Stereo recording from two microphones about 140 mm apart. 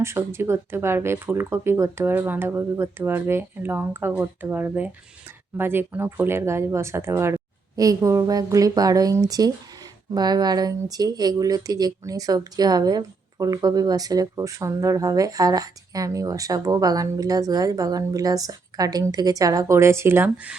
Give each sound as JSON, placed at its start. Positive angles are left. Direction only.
{"t": 0.0, "sound": "speech", "side_deg": -20}